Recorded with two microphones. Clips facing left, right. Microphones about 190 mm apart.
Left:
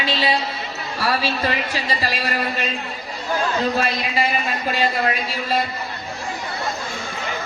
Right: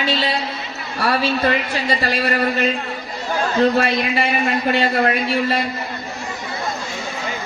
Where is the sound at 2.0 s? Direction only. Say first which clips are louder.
Right 5 dB; 55° right (ahead or behind).